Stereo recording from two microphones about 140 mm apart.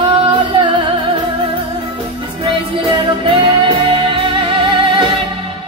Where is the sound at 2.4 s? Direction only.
35° right (ahead or behind).